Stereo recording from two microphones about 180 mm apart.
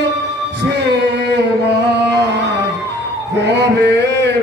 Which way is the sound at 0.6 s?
65° right (ahead or behind).